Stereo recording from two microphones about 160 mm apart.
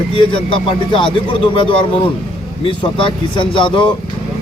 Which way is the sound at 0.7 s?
30° left (ahead or behind).